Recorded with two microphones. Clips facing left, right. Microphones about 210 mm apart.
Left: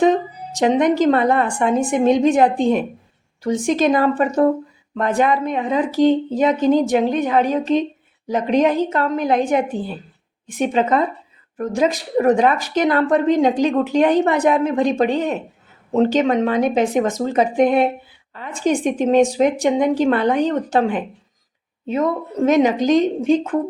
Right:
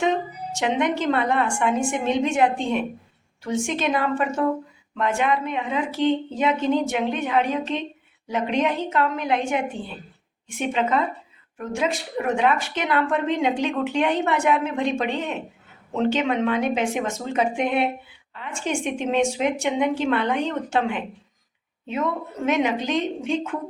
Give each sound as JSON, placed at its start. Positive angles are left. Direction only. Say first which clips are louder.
{"t": 0.6, "sound": "speech", "louder": "left 8 dB", "side_deg": 40}